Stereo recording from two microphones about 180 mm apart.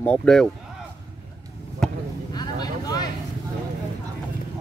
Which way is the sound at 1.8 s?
5° left (ahead or behind).